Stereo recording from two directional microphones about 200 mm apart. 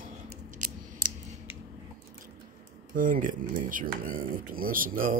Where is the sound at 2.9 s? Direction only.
40° right (ahead or behind).